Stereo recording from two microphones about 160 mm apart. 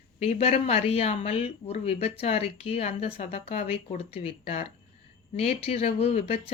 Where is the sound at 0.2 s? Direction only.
40° left (ahead or behind).